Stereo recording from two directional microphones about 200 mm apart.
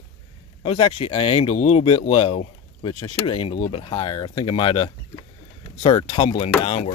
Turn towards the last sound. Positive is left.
turn(degrees=30)  # may be behind; listen again after turning